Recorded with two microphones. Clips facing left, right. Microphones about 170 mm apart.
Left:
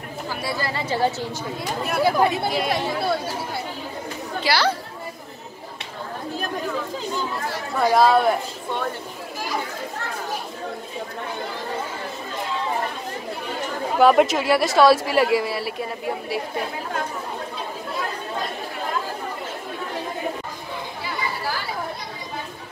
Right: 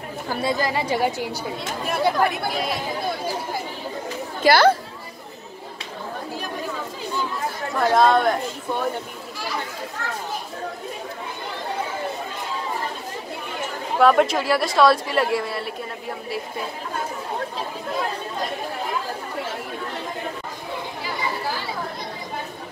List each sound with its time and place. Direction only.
0.4 s a woman's voice: 20° right (ahead or behind)
1.9 s speech: 5° left (ahead or behind)
2.1 s speech: 20° left (ahead or behind)
2.7 s speech: 70° left (ahead or behind)
4.4 s speech: 50° right (ahead or behind)
7.7 s speech: 5° left (ahead or behind)
13.9 s speech: centre (ahead or behind)